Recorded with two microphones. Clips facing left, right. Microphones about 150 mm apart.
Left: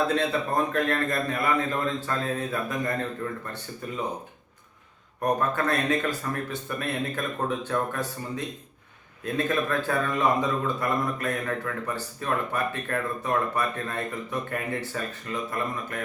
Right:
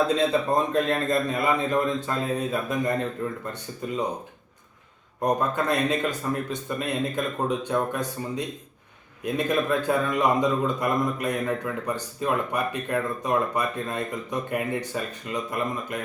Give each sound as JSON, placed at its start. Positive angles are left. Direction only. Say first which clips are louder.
{"t": 0.1, "sound": "a man's voice", "louder": "right 3 dB", "side_deg": -20}
{"t": 5.2, "sound": "a man's voice", "louder": "right 1 dB", "side_deg": -15}